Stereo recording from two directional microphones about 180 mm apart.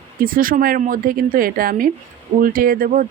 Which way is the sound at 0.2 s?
50° right (ahead or behind).